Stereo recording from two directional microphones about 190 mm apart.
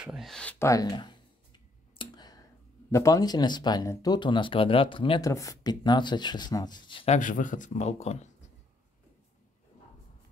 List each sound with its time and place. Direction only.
0.0 s a sound: centre (ahead or behind); by 2.4 s 20° left (ahead or behind)
2.9 s speech: 15° left (ahead or behind)
7.2 s speech: 45° left (ahead or behind)